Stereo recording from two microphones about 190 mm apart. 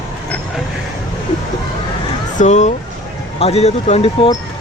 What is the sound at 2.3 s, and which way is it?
Speech, 40° left (ahead or behind).